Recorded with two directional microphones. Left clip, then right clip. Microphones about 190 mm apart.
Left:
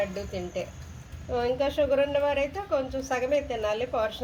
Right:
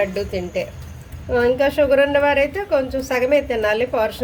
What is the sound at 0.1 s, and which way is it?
A woman's voice, 20° right (ahead or behind).